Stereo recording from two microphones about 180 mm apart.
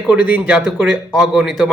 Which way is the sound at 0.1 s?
5° right (ahead or behind).